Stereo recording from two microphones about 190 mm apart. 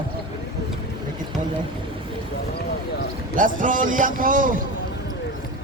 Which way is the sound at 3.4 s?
45° right (ahead or behind).